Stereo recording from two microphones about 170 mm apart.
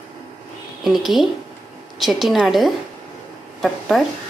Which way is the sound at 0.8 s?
Centre (ahead or behind).